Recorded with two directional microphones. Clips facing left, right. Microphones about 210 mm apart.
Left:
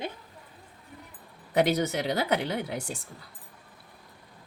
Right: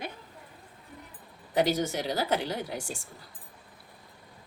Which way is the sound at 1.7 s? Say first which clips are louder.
Left 2 dB; 65° left (ahead or behind).